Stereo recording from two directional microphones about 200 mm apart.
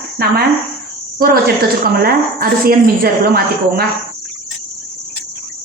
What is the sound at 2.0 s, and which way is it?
A woman's voice, 50° right (ahead or behind).